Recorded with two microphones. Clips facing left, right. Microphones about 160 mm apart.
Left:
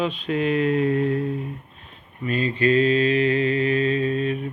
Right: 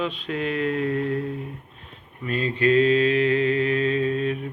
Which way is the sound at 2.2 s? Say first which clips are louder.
Left 1 dB; 5° left (ahead or behind).